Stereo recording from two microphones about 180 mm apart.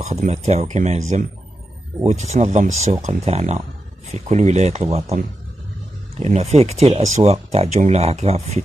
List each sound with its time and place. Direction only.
0.0 s speech: 40° right (ahead or behind)